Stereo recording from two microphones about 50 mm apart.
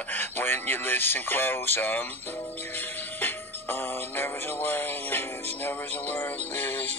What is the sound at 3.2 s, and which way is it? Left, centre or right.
Music, left.